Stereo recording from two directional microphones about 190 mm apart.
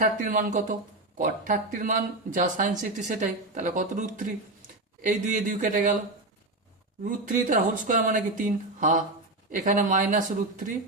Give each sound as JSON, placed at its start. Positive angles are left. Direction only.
{"t": 0.0, "sound": "speech", "side_deg": -45}
{"t": 7.0, "sound": "speech", "side_deg": -45}